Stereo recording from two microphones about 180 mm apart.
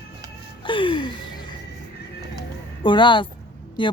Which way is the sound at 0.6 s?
30° left (ahead or behind).